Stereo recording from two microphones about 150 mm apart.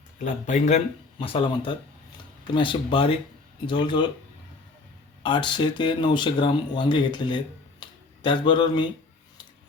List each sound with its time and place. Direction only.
0.2 s speech: 50° left (ahead or behind)
1.2 s speech: 35° left (ahead or behind)
5.2 s speech: 30° left (ahead or behind)